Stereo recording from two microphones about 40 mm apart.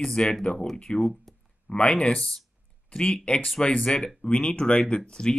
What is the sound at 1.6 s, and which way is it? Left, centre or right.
Speech, left.